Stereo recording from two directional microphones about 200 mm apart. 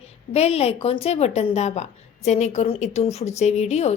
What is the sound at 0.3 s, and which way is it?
A woman's voice, 30° left (ahead or behind).